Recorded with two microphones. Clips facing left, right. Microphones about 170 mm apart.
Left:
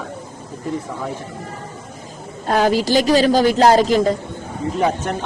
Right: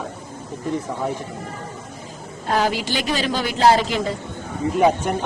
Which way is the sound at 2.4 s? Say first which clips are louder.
Left 5 dB; 40° left (ahead or behind).